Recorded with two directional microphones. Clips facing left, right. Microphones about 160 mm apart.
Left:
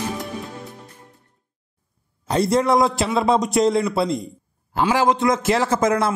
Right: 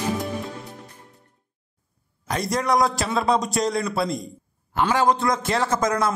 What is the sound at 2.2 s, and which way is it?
A man's voice, 30° left (ahead or behind).